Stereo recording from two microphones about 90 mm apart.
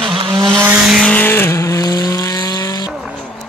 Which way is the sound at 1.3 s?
30° left (ahead or behind).